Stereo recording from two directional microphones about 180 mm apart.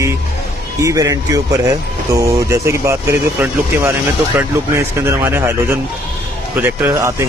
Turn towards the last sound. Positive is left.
turn(degrees=-15)  # may be behind; listen again after turning